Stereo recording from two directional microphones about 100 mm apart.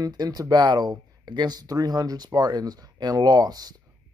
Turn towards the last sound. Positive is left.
turn(degrees=-40)  # may be behind; listen again after turning